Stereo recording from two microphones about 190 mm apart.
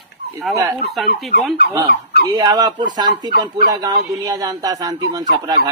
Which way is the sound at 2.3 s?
20° right (ahead or behind).